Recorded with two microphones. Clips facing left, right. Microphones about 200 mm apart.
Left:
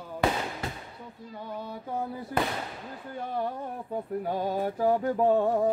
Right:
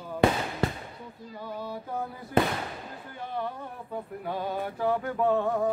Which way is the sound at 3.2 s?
40° left (ahead or behind).